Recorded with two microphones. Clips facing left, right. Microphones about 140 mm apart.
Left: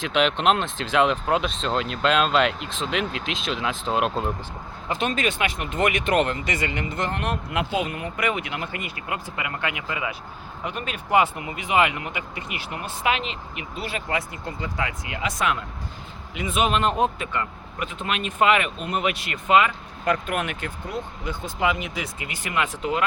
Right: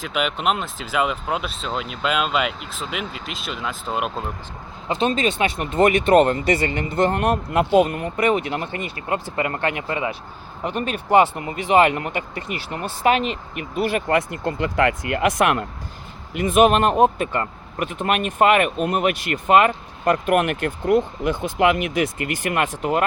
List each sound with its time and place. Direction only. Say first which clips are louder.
0.0 s speech: left 2 dB; 5° right (ahead or behind)
4.9 s a man's voice: right 4 dB; 25° right (ahead or behind); by 23.0 s 50° right (ahead or behind)